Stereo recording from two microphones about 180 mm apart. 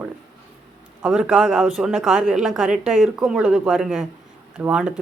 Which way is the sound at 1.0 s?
5° right (ahead or behind).